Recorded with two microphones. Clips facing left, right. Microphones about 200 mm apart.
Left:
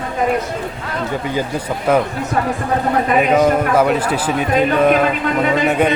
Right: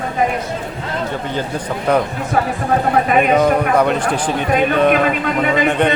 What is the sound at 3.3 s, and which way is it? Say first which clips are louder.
A man's voice: left 2 dB; 5° left (ahead or behind).